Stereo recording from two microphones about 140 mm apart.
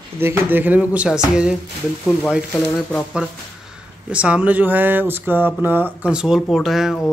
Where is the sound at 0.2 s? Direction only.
15° right (ahead or behind).